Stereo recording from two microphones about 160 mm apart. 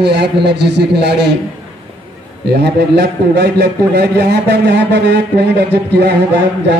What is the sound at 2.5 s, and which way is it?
A man's voice, 90° right.